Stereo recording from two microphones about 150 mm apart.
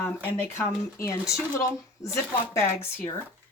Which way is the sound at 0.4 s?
15° left (ahead or behind).